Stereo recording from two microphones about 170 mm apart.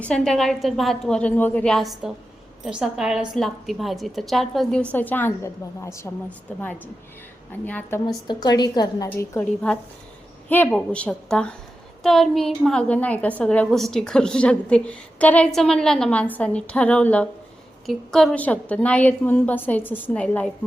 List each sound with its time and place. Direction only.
0.0 s a woman's voice: 5° left (ahead or behind)
8.0 s a woman's voice: 25° left (ahead or behind)
10.5 s a woman's voice: 5° left (ahead or behind)